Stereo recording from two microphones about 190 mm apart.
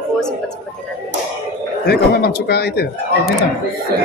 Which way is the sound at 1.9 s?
55° left (ahead or behind).